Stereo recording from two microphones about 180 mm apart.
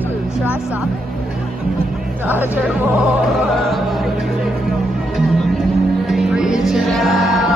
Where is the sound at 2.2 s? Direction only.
10° right (ahead or behind).